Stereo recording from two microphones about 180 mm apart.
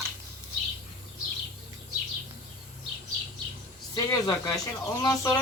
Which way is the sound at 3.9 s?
20° left (ahead or behind).